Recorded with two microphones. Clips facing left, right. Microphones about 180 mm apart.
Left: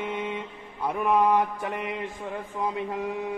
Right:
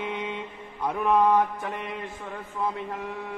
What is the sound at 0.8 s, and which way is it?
Speech, 10° left (ahead or behind).